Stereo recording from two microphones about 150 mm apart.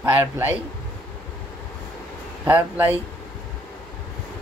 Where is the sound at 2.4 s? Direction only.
15° right (ahead or behind).